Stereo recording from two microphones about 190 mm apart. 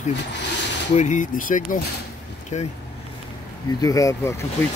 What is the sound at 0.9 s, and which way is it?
Speech, 40° left (ahead or behind).